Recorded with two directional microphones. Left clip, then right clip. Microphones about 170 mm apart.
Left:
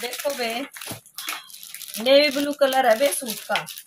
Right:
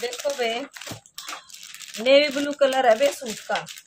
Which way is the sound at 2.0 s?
20° right (ahead or behind).